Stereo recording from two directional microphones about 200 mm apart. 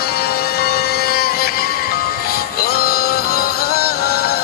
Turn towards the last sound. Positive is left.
turn(degrees=50)  # may be behind; listen again after turning